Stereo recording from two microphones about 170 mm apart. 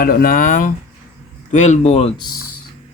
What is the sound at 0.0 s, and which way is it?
Speech, 60° left (ahead or behind).